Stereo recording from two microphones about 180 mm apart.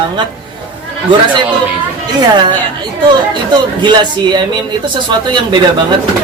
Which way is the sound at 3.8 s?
25° right (ahead or behind).